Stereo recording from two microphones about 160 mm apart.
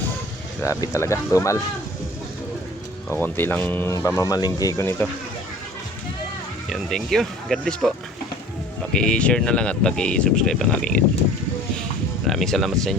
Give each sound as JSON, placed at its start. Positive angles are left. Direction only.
{"t": 0.6, "sound": "speech", "side_deg": 20}
{"t": 3.1, "sound": "speech", "side_deg": 15}
{"t": 6.7, "sound": "speech", "side_deg": 0}
{"t": 9.0, "sound": "speech", "side_deg": 5}
{"t": 12.3, "sound": "speech", "side_deg": 0}